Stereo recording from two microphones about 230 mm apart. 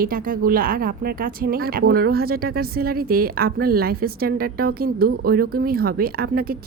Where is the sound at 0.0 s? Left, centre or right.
Right.